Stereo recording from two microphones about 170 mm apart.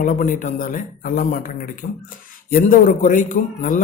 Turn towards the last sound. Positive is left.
turn(degrees=50)  # may be behind; listen again after turning